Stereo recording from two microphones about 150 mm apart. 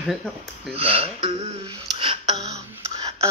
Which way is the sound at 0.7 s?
40° right (ahead or behind).